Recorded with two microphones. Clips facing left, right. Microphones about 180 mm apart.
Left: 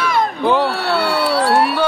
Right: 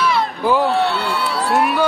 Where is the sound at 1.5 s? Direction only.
35° left (ahead or behind).